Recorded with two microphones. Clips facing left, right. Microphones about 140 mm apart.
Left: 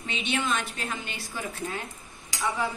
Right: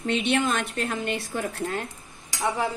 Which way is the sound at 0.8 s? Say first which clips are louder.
Right 7 dB; 50° right (ahead or behind).